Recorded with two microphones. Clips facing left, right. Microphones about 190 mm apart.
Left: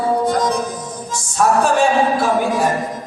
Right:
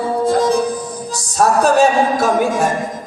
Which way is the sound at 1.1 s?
40° right (ahead or behind).